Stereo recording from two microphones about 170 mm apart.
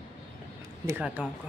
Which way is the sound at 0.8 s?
10° right (ahead or behind).